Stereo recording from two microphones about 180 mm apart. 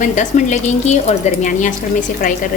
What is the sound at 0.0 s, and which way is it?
A woman's voice, 45° left (ahead or behind).